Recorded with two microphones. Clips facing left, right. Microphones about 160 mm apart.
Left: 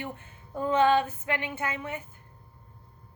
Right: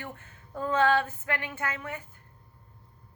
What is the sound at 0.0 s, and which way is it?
A woman's voice, 20° left (ahead or behind).